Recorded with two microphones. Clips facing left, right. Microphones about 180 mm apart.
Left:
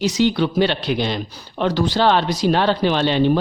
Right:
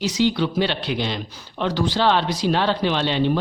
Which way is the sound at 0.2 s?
55° left (ahead or behind).